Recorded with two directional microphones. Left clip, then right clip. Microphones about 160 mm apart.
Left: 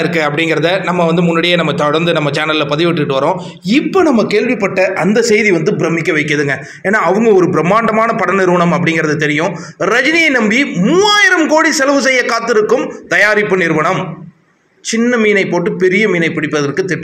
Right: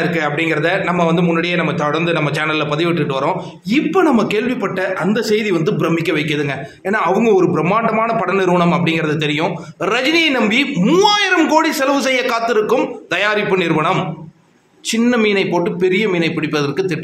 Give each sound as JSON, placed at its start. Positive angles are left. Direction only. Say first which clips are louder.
{"t": 0.0, "sound": "a man's voice", "louder": "left 4 dB", "side_deg": 30}
{"t": 5.1, "sound": "a man's voice", "louder": "left 7 dB", "side_deg": 25}
{"t": 15.0, "sound": "a man's voice", "louder": "left 4 dB", "side_deg": 0}